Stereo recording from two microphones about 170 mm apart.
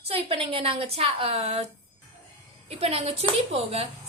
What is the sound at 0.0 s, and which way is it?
A woman's voice, 35° right (ahead or behind).